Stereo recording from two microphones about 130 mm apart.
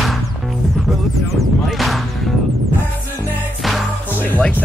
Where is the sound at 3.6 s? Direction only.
Centre (ahead or behind).